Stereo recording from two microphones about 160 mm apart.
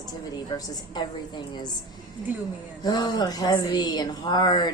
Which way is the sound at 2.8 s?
25° left (ahead or behind).